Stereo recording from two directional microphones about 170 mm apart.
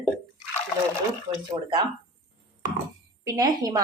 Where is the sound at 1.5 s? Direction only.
30° right (ahead or behind).